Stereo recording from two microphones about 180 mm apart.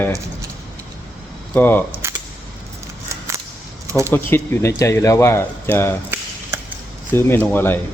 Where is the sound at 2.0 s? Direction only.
15° right (ahead or behind).